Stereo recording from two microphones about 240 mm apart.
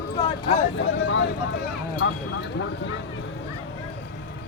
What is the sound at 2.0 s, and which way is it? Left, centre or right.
Speech, left.